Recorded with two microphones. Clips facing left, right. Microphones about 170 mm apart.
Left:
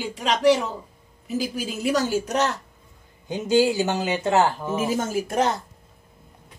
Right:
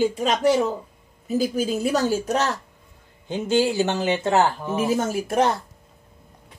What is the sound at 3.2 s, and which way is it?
Speech, 15° left (ahead or behind).